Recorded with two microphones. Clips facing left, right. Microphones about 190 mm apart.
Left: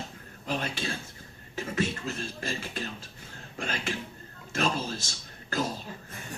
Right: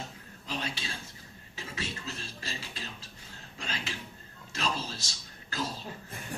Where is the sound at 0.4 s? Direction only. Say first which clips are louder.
Left 5 dB; 50° left (ahead or behind).